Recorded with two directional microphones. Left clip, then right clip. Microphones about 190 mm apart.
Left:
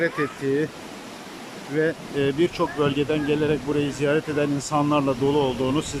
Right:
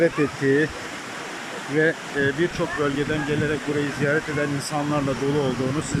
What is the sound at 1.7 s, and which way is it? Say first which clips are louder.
Speech: right 2 dB; 5° left (ahead or behind).